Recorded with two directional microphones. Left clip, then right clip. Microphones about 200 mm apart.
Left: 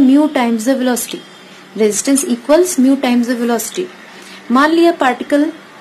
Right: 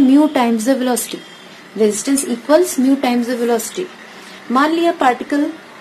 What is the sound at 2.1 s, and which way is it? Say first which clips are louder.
A woman's voice: left 2 dB; 15° left (ahead or behind).